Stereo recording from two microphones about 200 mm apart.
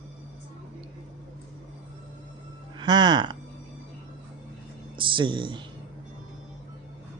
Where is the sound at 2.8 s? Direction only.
25° right (ahead or behind).